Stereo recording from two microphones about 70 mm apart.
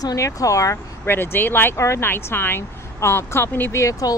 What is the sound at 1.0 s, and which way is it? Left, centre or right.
Speech, left.